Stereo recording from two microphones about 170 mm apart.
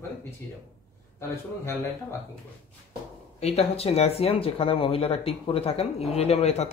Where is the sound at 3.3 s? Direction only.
40° left (ahead or behind).